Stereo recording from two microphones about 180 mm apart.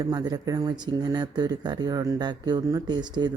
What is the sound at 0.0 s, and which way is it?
Speech, 20° right (ahead or behind).